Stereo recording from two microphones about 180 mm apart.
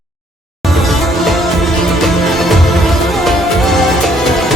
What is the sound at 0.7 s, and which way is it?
Music, centre (ahead or behind).